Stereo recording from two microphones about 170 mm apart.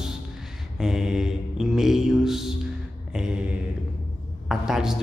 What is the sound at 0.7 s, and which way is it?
A man's voice, centre (ahead or behind).